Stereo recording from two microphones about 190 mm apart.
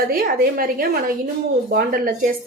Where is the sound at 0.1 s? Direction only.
50° right (ahead or behind).